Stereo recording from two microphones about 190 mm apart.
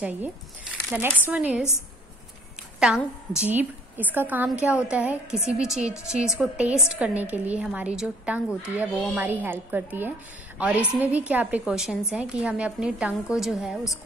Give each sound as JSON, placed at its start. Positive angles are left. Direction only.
{"t": 0.9, "sound": "a woman's voice", "side_deg": -10}
{"t": 2.8, "sound": "a woman's voice", "side_deg": -5}